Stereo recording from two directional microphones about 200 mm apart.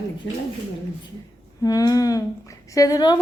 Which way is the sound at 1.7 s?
15° left (ahead or behind).